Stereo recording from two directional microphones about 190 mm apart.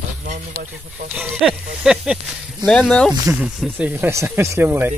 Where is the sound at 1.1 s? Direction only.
5° right (ahead or behind).